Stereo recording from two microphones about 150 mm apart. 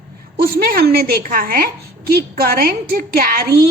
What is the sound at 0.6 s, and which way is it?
A woman's voice, 85° right.